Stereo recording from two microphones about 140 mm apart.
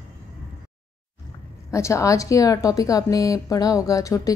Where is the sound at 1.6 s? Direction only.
20° left (ahead or behind).